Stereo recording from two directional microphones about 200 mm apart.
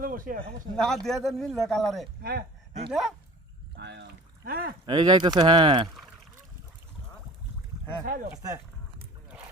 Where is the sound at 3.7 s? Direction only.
60° right (ahead or behind).